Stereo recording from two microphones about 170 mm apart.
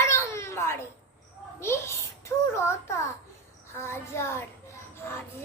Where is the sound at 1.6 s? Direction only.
15° left (ahead or behind).